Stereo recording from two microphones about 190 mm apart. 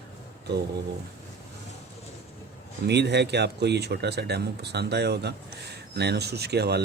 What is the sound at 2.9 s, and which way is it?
Speech, 60° right (ahead or behind).